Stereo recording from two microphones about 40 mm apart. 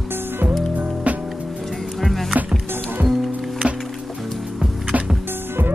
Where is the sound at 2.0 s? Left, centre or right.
Centre.